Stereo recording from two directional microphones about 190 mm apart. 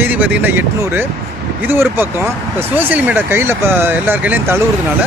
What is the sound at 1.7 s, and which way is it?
Speech, 10° right (ahead or behind).